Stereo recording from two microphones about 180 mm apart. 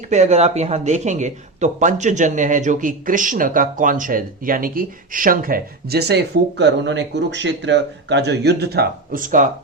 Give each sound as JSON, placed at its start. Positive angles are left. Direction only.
{"t": 0.1, "sound": "speech", "side_deg": -40}